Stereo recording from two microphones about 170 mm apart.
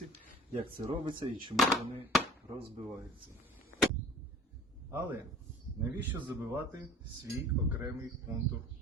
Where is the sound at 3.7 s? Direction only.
90° left.